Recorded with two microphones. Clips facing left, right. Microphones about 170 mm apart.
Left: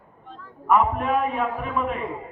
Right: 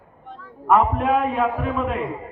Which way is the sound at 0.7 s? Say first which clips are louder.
Right 3 dB; 80° right.